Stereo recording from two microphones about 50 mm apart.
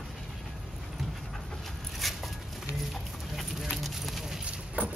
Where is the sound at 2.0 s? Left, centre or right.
Centre.